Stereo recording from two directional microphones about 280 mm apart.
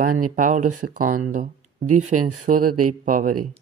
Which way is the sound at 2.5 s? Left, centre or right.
Right.